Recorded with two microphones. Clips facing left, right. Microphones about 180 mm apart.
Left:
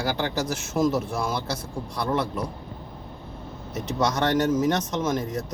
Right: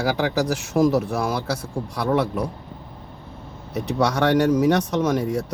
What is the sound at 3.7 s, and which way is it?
Speech, 10° right (ahead or behind).